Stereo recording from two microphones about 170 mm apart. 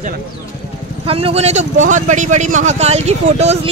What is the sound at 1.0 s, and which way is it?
Speech, 35° right (ahead or behind).